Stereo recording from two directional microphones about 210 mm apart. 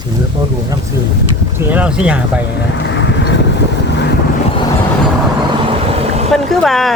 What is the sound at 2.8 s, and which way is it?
Vehicle, 55° left (ahead or behind).